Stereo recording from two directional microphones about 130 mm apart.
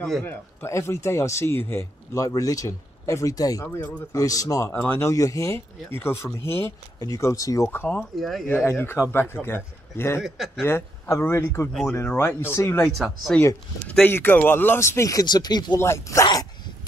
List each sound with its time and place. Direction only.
0.2 s speech: 15° left (ahead or behind)
8.2 s speech: centre (ahead or behind)
8.5 s a man's voice: 15° left (ahead or behind)
10.2 s speech: 5° right (ahead or behind)
10.6 s a man's voice: 20° left (ahead or behind)
12.8 s speech: centre (ahead or behind)
13.8 s speech: 10° left (ahead or behind); by 15.8 s 35° left (ahead or behind)
15.8 s speech: 20° left (ahead or behind)